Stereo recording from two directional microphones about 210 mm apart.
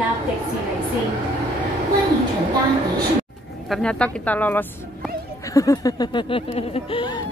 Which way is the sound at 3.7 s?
5° left (ahead or behind).